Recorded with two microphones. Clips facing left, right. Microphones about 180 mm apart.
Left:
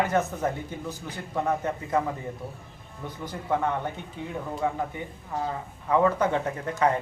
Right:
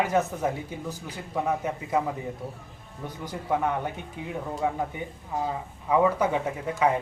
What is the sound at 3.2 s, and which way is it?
Speech, 15° right (ahead or behind).